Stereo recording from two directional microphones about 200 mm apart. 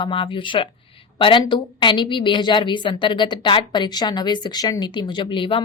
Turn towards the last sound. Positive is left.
turn(degrees=25)  # may be behind; listen again after turning